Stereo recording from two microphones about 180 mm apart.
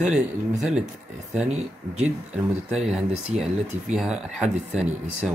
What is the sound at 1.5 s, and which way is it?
Speech, 35° right (ahead or behind).